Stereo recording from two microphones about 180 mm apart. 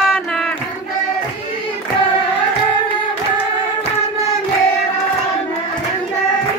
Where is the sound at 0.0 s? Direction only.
Centre (ahead or behind).